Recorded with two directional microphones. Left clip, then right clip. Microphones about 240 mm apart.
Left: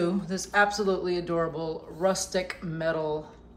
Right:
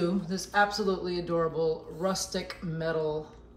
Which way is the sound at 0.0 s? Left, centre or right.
Centre.